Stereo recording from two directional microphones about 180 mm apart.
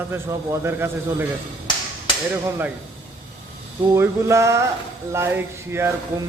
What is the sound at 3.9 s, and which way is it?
Speech, 15° right (ahead or behind).